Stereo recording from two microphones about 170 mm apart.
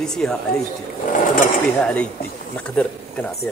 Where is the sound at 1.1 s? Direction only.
55° left (ahead or behind).